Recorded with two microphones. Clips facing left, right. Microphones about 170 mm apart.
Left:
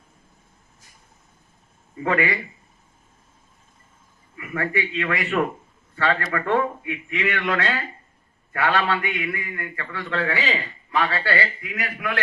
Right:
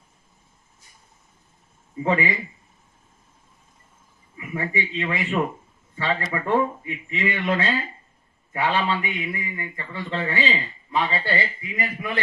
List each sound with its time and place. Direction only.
2.0 s a man's voice: 75° left (ahead or behind)
4.5 s a man's voice: 80° left
8.5 s a man's voice: 75° left (ahead or behind)